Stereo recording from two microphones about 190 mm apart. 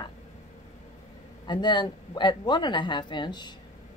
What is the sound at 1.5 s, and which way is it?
Speech, 25° left (ahead or behind).